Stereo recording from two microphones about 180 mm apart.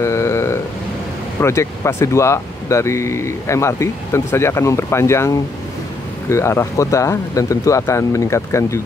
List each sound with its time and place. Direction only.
0.0 s vehicle: 15° left (ahead or behind)
1.4 s speech: 15° left (ahead or behind)